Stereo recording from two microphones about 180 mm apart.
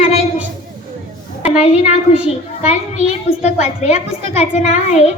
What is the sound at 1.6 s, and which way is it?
Speech, 40° left (ahead or behind).